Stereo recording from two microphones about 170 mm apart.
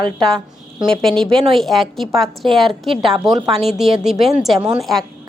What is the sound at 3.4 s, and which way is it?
Speech, 25° right (ahead or behind).